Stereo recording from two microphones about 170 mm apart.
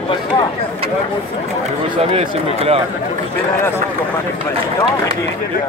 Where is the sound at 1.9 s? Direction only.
35° right (ahead or behind).